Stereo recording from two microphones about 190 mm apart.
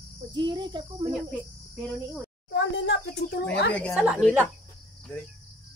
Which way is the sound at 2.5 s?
70° left (ahead or behind).